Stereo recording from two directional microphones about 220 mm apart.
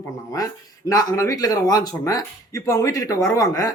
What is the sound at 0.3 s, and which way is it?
A man's voice, 15° left (ahead or behind).